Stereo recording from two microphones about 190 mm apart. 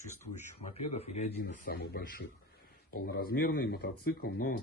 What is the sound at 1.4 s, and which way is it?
Speech, 50° left (ahead or behind).